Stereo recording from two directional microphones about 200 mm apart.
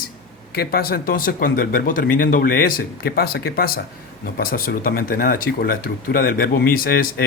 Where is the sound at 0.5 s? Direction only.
50° left (ahead or behind).